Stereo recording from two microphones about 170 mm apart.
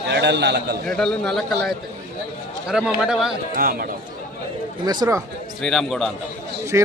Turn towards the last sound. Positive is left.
turn(degrees=-15)  # may be behind; listen again after turning